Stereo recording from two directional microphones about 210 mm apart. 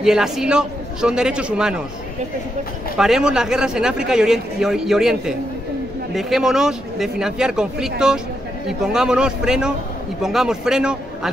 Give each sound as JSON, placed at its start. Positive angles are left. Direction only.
{"t": 0.0, "sound": "a man's voice", "side_deg": 0}
{"t": 3.0, "sound": "a man's voice", "side_deg": -5}